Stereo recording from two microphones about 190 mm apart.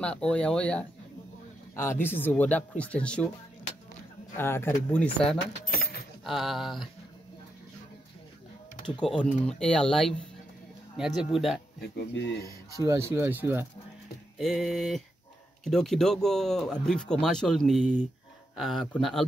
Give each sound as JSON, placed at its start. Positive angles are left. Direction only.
{"t": 0.0, "sound": "speech", "side_deg": 5}
{"t": 4.4, "sound": "speech", "side_deg": 10}
{"t": 5.7, "sound": "keys jangling", "side_deg": 55}
{"t": 6.2, "sound": "speech", "side_deg": 0}
{"t": 9.4, "sound": "speech", "side_deg": 5}
{"t": 11.8, "sound": "speech", "side_deg": 65}
{"t": 12.8, "sound": "speech", "side_deg": -15}
{"t": 14.4, "sound": "speech", "side_deg": 0}